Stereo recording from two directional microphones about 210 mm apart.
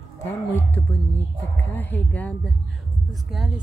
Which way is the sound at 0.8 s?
15° left (ahead or behind).